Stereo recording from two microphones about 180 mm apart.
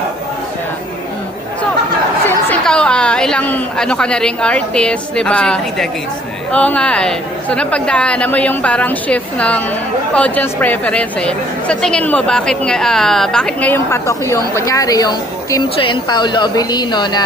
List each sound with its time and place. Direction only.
2.2 s a woman's voice: 5° left (ahead or behind); by 17.2 s 25° left (ahead or behind)